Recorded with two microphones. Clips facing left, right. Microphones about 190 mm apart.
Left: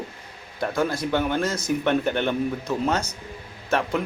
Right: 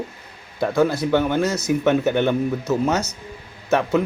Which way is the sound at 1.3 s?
10° right (ahead or behind).